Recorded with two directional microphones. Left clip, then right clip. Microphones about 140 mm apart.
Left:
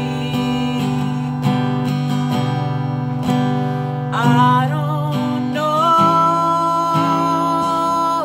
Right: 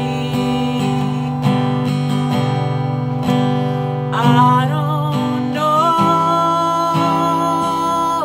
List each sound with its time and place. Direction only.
4.2 s music: 15° right (ahead or behind)
5.7 s music: 20° right (ahead or behind)
5.9 s music: 45° right (ahead or behind)
6.2 s music: 20° right (ahead or behind)
6.9 s music: 45° right (ahead or behind)
7.3 s music: 20° right (ahead or behind)